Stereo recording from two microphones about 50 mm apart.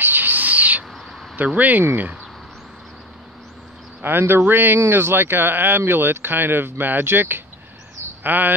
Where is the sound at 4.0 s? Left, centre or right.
Right.